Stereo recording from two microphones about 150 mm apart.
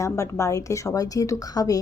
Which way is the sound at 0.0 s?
20° left (ahead or behind).